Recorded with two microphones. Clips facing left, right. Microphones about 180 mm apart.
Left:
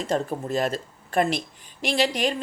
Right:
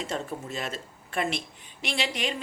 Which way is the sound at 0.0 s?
40° left (ahead or behind).